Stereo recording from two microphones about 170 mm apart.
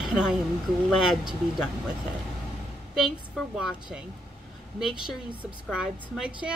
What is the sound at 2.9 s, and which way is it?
Speech, centre (ahead or behind).